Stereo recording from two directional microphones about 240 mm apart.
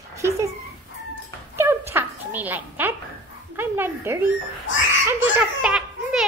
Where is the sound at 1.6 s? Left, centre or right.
Centre.